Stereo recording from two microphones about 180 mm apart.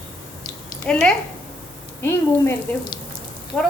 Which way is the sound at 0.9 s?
5° left (ahead or behind).